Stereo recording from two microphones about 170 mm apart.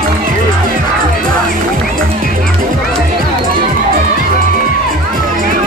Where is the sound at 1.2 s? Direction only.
55° right (ahead or behind).